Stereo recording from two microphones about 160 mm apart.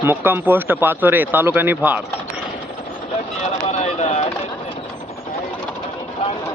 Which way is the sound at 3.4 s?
45° left (ahead or behind).